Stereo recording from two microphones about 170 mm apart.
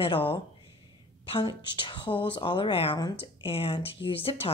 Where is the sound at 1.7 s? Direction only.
30° left (ahead or behind).